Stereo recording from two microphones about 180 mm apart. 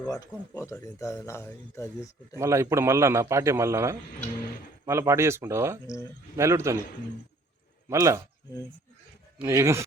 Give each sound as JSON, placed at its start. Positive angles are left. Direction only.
{"t": 0.1, "sound": "speech", "side_deg": 15}
{"t": 2.4, "sound": "a man's voice", "side_deg": -15}
{"t": 7.9, "sound": "a man's voice", "side_deg": -15}
{"t": 9.4, "sound": "a man's voice", "side_deg": -15}